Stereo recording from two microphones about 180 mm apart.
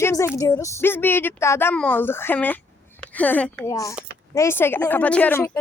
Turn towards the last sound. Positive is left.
turn(degrees=10)  # may be behind; listen again after turning